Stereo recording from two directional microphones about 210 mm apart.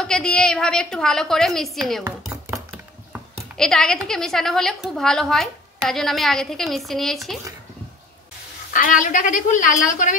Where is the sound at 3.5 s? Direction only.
5° left (ahead or behind).